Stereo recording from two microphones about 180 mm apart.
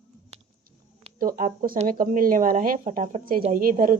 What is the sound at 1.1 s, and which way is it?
A woman's voice, 50° right (ahead or behind).